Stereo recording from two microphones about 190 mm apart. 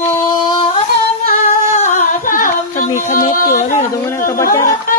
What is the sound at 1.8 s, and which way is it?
Singing, 40° left (ahead or behind).